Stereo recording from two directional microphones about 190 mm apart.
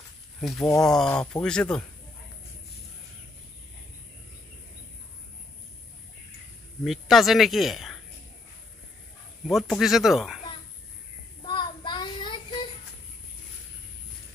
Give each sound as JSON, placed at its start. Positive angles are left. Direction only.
{"t": 0.4, "sound": "speech", "side_deg": 0}
{"t": 6.8, "sound": "speech", "side_deg": 0}
{"t": 9.5, "sound": "speech", "side_deg": 0}
{"t": 11.4, "sound": "child singing", "side_deg": 25}